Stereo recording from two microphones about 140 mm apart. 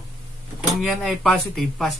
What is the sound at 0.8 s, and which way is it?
Speech, centre (ahead or behind).